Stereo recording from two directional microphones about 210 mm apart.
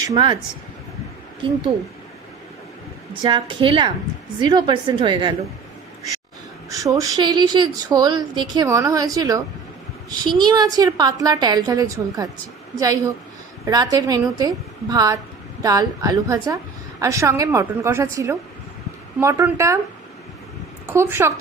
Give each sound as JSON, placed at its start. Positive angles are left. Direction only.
{"t": 0.0, "sound": "a woman's voice", "side_deg": -20}
{"t": 3.1, "sound": "a woman's voice", "side_deg": -25}
{"t": 6.7, "sound": "a woman's voice", "side_deg": -15}
{"t": 20.8, "sound": "speech", "side_deg": -10}